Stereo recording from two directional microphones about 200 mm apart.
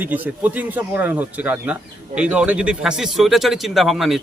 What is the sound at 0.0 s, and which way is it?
A man's voice, 10° right (ahead or behind).